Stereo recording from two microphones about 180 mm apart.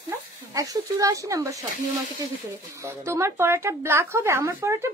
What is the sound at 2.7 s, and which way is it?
Speech, 15° right (ahead or behind).